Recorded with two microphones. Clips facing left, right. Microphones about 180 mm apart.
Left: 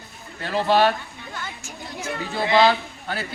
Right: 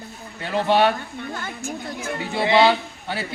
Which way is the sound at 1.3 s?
50° right (ahead or behind).